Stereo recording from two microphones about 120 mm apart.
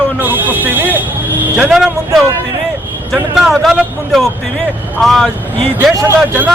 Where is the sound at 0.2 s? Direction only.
15° right (ahead or behind).